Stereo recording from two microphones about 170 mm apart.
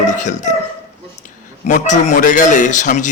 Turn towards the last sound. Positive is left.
turn(degrees=45)  # may be behind; listen again after turning